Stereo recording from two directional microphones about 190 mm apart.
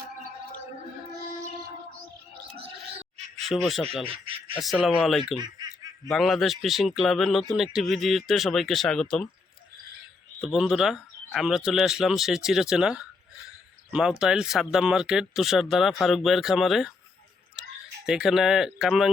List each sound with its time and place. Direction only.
2.6 s a sound: 35° right (ahead or behind)
3.5 s speech: centre (ahead or behind)
4.0 s duck: 30° right (ahead or behind)
4.5 s speech: centre (ahead or behind)
5.4 s snicker: 20° right (ahead or behind)
6.1 s speech: centre (ahead or behind)
10.4 s speech: centre (ahead or behind)
18.0 s speech: centre (ahead or behind)